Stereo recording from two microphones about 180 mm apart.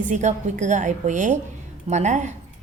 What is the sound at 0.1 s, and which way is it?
A woman's voice, 45° right (ahead or behind).